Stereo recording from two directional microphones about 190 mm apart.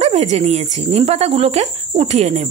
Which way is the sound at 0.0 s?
35° right (ahead or behind).